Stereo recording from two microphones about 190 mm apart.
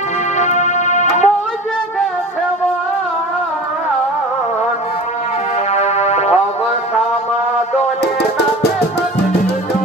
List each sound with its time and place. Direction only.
0.4 s music: 40° left (ahead or behind)
5.7 s music: 35° left (ahead or behind)
8.0 s music: 60° left (ahead or behind)